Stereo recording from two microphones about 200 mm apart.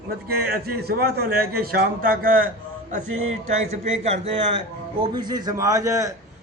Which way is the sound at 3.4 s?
35° right (ahead or behind).